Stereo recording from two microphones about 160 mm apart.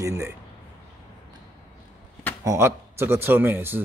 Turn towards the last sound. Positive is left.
turn(degrees=-15)  # may be behind; listen again after turning